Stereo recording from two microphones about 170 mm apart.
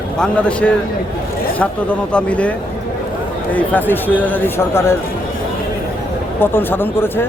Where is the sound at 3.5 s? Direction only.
10° left (ahead or behind).